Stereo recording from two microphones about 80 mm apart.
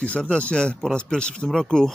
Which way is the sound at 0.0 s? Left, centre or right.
Centre.